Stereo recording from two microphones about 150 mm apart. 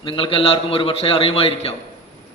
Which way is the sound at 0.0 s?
35° left (ahead or behind).